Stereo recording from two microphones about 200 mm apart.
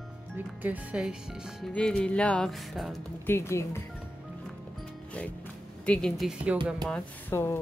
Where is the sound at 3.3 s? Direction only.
15° left (ahead or behind).